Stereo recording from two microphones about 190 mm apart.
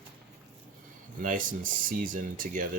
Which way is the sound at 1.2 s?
45° right (ahead or behind).